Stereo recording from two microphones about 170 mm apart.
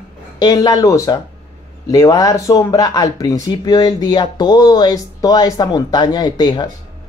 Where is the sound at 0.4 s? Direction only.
20° left (ahead or behind).